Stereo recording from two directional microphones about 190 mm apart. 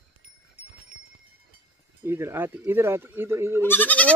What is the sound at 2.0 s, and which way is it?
Speech, 15° right (ahead or behind).